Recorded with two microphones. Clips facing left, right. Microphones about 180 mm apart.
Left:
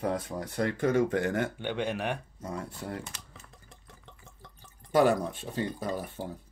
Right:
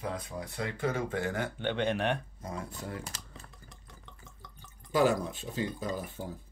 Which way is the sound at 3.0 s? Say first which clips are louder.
Left 1 dB; 35° right (ahead or behind).